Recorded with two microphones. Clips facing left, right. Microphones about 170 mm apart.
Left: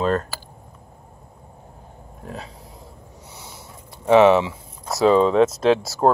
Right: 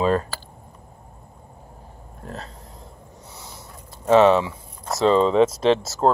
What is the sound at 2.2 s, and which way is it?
Speech, 5° left (ahead or behind).